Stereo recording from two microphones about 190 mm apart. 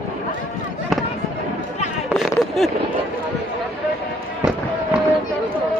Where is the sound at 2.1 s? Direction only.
Centre (ahead or behind).